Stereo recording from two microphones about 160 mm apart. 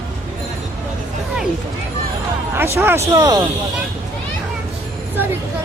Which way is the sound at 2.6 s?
15° right (ahead or behind).